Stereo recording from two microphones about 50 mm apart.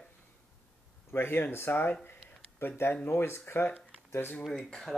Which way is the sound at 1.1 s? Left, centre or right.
Left.